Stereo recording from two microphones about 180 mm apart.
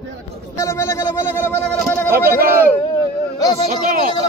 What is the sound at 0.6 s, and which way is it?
Speech, 15° left (ahead or behind).